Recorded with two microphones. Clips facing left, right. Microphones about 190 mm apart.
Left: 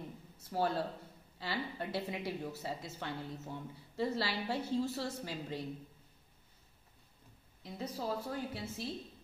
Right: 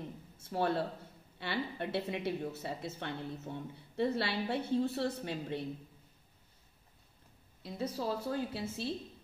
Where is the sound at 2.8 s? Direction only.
65° right (ahead or behind).